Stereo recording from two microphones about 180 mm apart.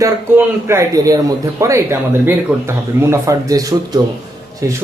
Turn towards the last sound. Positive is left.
turn(degrees=-15)  # may be behind; listen again after turning